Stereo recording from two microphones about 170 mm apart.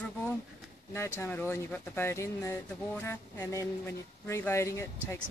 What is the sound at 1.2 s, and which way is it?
Speech, 15° left (ahead or behind).